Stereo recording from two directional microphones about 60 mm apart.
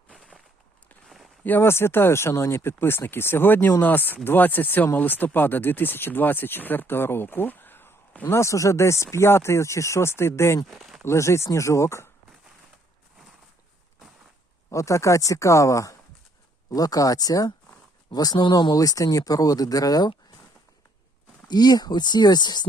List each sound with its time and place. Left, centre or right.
1.0 s a sound: centre
1.5 s speech: left
2.6 s speech: left
8.3 s speech: left
10.7 s speech: centre
11.0 s speech: left
14.7 s speech: left
16.6 s speech: left
22.2 s speech: left